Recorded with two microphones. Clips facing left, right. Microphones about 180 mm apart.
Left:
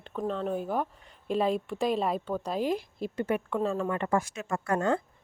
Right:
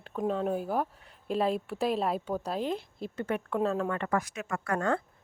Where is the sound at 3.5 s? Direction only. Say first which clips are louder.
Right 3 dB; centre (ahead or behind).